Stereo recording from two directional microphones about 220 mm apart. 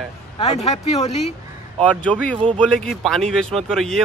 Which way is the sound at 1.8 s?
5° left (ahead or behind).